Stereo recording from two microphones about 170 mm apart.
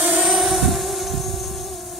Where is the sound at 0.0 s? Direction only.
5° right (ahead or behind).